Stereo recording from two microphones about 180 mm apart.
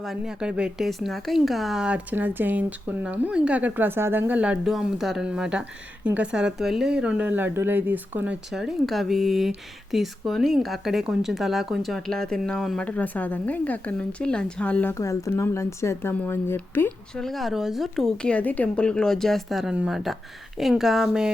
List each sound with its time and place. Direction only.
0.0 s speech: 5° right (ahead or behind)